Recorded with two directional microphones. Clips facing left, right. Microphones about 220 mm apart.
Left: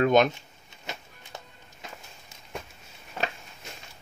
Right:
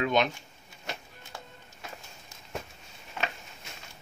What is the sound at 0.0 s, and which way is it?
Speech, 50° left (ahead or behind).